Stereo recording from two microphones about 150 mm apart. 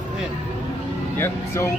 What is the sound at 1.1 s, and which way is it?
Speech, 15° left (ahead or behind).